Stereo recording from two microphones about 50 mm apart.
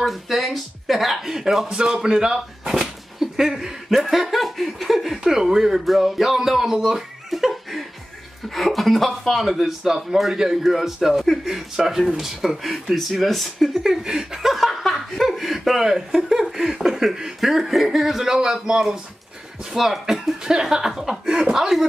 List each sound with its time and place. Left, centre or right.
0.0 s a man's voice: centre
13.8 s speech: centre